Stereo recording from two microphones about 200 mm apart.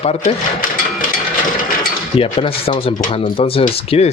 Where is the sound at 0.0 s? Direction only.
30° left (ahead or behind).